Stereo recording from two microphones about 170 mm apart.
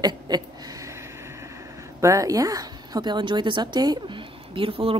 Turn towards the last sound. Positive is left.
turn(degrees=-30)  # may be behind; listen again after turning